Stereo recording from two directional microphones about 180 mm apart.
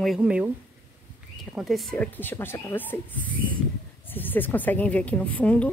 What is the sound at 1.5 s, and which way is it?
Speech, centre (ahead or behind).